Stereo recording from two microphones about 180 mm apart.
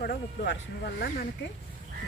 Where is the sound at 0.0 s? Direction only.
65° left (ahead or behind).